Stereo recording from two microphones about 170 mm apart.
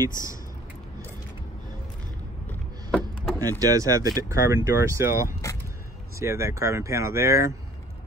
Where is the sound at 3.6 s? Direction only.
20° right (ahead or behind).